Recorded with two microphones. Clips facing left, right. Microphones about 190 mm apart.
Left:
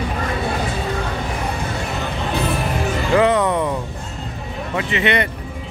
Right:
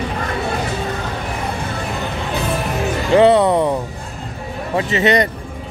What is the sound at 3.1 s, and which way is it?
Music, 30° right (ahead or behind).